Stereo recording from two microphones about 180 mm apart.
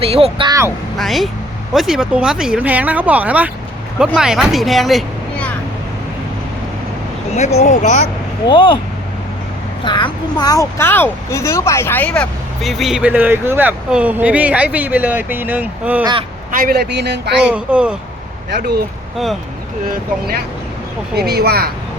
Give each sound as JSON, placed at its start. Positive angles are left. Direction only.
{"t": 0.0, "sound": "speech", "side_deg": -35}
{"t": 0.9, "sound": "speech", "side_deg": 0}
{"t": 7.3, "sound": "speech", "side_deg": 40}
{"t": 8.4, "sound": "speech", "side_deg": 25}
{"t": 9.8, "sound": "speech", "side_deg": 25}
{"t": 16.5, "sound": "a man's voice", "side_deg": -50}
{"t": 17.4, "sound": "speech", "side_deg": -5}
{"t": 18.5, "sound": "a man's voice", "side_deg": -60}
{"t": 19.1, "sound": "speech", "side_deg": 0}
{"t": 21.2, "sound": "a man's voice", "side_deg": -60}